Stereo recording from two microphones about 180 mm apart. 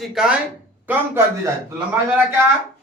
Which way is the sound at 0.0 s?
5° right (ahead or behind).